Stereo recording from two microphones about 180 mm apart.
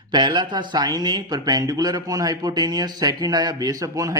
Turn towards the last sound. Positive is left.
turn(degrees=-20)  # may be behind; listen again after turning